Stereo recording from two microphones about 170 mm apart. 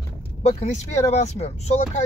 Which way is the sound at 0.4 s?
40° left (ahead or behind).